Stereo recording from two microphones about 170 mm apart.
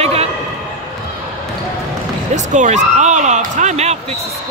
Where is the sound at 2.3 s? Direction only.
45° right (ahead or behind).